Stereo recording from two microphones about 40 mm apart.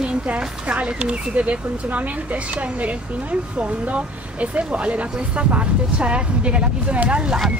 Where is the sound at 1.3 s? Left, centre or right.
Right.